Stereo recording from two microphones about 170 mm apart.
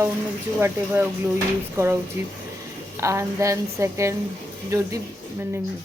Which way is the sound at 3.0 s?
15° right (ahead or behind).